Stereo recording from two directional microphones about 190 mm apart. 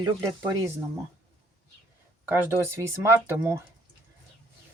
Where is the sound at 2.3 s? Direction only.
10° right (ahead or behind).